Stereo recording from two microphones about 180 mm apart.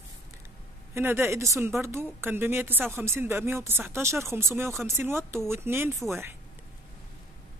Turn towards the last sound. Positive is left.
turn(degrees=-15)  # may be behind; listen again after turning